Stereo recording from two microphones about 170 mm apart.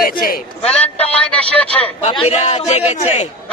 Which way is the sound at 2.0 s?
35° left (ahead or behind).